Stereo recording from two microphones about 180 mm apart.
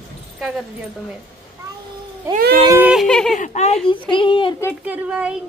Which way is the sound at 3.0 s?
5° left (ahead or behind).